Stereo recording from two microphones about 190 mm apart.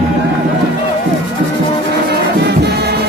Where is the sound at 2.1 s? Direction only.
60° right (ahead or behind).